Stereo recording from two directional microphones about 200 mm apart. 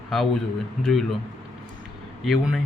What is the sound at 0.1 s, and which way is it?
Speech, centre (ahead or behind).